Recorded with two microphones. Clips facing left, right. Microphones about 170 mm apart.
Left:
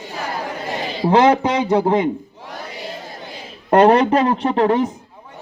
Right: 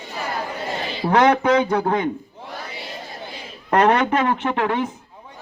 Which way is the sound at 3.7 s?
30° left (ahead or behind).